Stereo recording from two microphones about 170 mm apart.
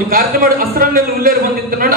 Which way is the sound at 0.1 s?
55° right (ahead or behind).